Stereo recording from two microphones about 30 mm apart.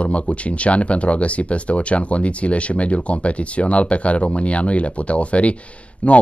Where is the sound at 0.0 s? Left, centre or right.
Left.